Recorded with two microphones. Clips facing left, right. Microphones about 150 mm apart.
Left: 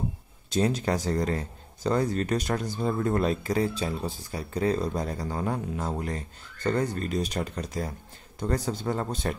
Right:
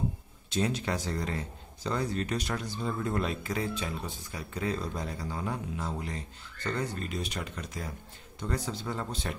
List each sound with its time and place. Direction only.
0.5 s speech: 40° left (ahead or behind)